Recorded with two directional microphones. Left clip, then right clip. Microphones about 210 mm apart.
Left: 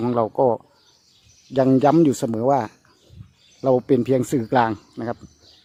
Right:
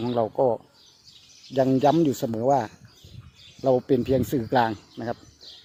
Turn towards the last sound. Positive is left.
turn(degrees=15)  # may be behind; listen again after turning